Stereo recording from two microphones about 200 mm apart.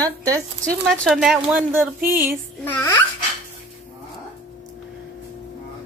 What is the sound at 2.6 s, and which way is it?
Speech, 10° left (ahead or behind).